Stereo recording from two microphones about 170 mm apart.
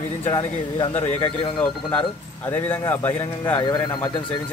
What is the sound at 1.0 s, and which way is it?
Speech, 10° left (ahead or behind).